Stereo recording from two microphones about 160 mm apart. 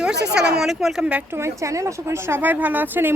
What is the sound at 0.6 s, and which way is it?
Speech, centre (ahead or behind).